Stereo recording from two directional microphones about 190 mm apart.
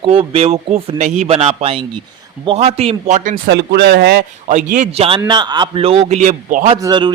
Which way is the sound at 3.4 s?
65° right (ahead or behind).